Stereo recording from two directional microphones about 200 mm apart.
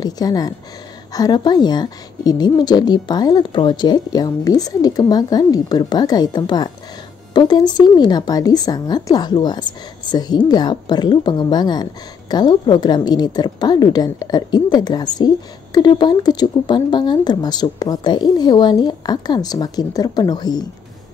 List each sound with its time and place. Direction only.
0.0 s speech: 20° left (ahead or behind)